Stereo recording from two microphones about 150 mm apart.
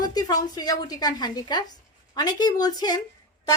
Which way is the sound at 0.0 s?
25° left (ahead or behind).